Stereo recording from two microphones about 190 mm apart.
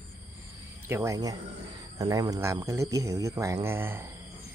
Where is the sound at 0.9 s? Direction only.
15° right (ahead or behind).